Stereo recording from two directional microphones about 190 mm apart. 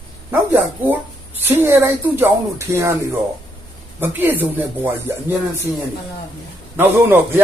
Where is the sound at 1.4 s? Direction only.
10° right (ahead or behind).